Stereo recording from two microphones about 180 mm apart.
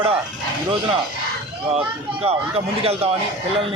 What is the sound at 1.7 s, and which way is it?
Speech, 35° right (ahead or behind).